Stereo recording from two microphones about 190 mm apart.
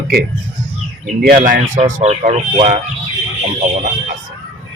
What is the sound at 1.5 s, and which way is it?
Speech, 40° right (ahead or behind).